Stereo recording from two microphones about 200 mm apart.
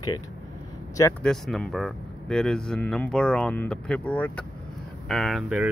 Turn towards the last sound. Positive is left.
turn(degrees=-5)  # may be behind; listen again after turning